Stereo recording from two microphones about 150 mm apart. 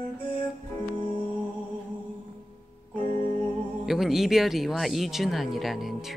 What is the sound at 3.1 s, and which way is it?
Music, 50° right (ahead or behind).